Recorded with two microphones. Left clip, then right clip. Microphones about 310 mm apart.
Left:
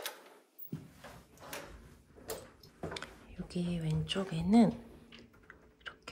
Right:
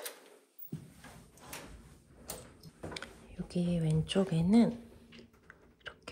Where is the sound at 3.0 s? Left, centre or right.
Centre.